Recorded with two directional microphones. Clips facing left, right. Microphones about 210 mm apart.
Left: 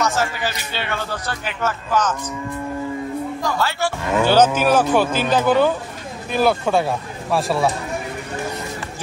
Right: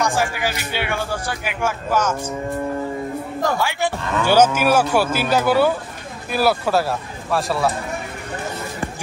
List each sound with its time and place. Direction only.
0.0 s a man's voice: 15° right (ahead or behind)
3.5 s a man's voice: 15° right (ahead or behind)
4.0 s speech: 15° left (ahead or behind)
4.6 s a man's voice: 10° right (ahead or behind)